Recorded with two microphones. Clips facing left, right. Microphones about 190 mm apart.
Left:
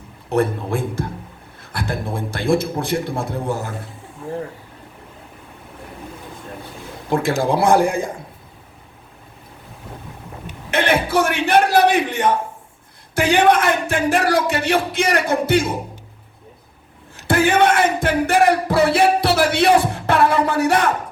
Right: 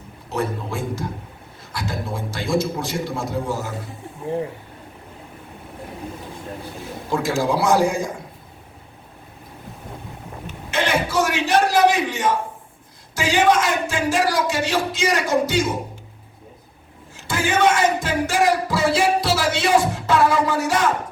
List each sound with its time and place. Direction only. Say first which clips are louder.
0.3 s music: left 6 dB; 55° left (ahead or behind)
7.1 s music: left 3 dB; 55° left (ahead or behind)
10.7 s a sound: left 4 dB; 60° left (ahead or behind)
13.1 s music: left 3 dB; 60° left (ahead or behind)
17.2 s music: left 4 dB; 60° left (ahead or behind)